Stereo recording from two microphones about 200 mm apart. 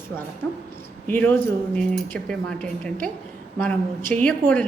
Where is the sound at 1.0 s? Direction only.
10° left (ahead or behind).